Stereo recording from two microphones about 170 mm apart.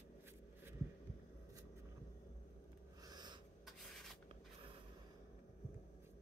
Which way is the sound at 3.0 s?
25° right (ahead or behind).